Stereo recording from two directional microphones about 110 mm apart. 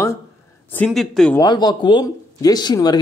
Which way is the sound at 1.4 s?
40° left (ahead or behind).